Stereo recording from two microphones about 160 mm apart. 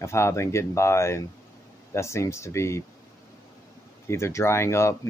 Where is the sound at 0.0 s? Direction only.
15° left (ahead or behind).